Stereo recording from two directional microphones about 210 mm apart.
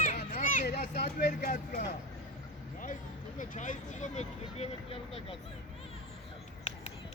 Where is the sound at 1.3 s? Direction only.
40° left (ahead or behind).